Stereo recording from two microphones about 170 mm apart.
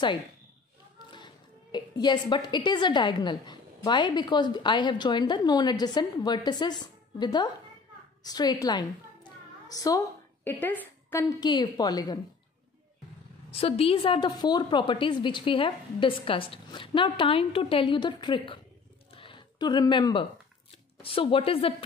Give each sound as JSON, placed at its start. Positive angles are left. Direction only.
{"t": 1.1, "sound": "a woman's voice", "side_deg": 25}
{"t": 13.5, "sound": "a woman's voice", "side_deg": 35}
{"t": 19.1, "sound": "a sound", "side_deg": 30}
{"t": 21.0, "sound": "speech", "side_deg": 35}